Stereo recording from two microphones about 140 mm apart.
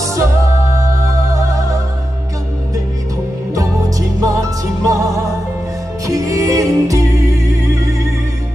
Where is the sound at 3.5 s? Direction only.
25° right (ahead or behind).